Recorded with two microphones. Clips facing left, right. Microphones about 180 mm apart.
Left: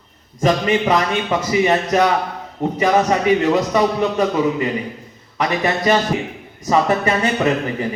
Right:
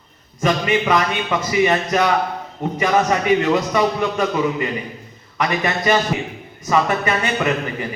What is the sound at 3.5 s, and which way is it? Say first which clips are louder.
Speech: left 1 dB; 30° left (ahead or behind).